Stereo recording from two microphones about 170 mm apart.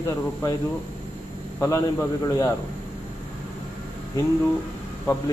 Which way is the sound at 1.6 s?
15° left (ahead or behind).